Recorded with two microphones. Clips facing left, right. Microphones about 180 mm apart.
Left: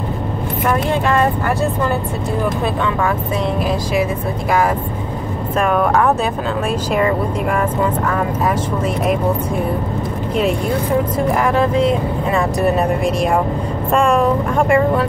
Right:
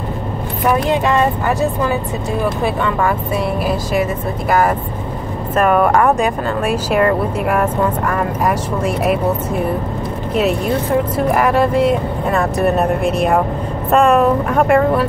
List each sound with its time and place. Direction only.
0.7 s speech: 15° right (ahead or behind)
4.5 s speech: 5° right (ahead or behind)
8.5 s speech: 5° right (ahead or behind)
11.1 s speech: 5° right (ahead or behind)